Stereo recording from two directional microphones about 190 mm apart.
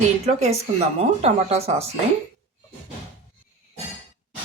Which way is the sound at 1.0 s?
35° right (ahead or behind).